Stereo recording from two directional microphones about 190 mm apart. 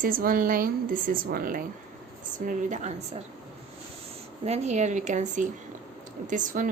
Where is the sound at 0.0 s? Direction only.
50° right (ahead or behind).